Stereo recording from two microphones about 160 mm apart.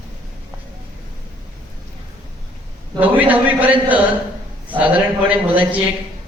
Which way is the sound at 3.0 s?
10° right (ahead or behind).